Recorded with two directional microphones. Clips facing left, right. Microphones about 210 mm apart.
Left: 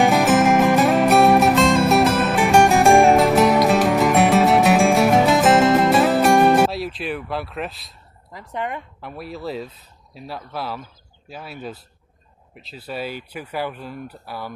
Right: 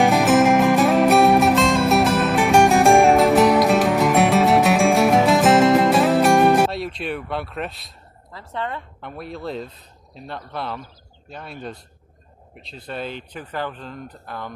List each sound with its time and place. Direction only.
0.0 s music: centre (ahead or behind)
8.3 s speech: 15° left (ahead or behind)
9.0 s speech: 5° left (ahead or behind)